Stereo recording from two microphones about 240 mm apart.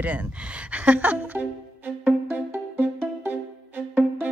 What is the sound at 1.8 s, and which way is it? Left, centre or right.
Music, centre.